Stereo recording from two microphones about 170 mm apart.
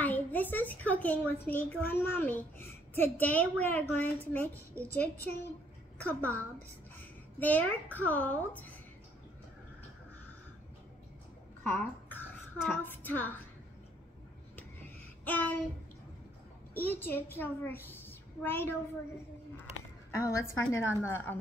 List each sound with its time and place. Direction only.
0.0 s a woman's voice: 10° left (ahead or behind)
11.7 s a child's voice: 10° left (ahead or behind)
15.2 s a woman's voice: 10° left (ahead or behind)
16.7 s a child's voice: 10° left (ahead or behind)
20.1 s a woman's voice: 20° left (ahead or behind)